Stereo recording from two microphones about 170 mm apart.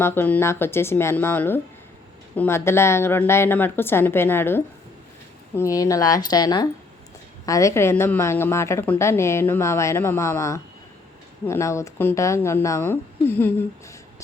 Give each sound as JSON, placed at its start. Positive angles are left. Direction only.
{"t": 0.0, "sound": "a woman's voice", "side_deg": 15}